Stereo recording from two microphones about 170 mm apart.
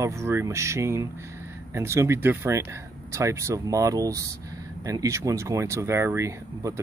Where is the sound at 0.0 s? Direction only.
15° right (ahead or behind).